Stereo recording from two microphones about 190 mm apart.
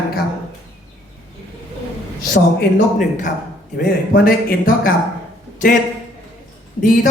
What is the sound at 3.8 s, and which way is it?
Speech, 50° left (ahead or behind).